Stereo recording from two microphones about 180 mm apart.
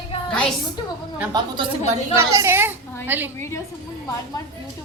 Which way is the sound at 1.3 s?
20° right (ahead or behind).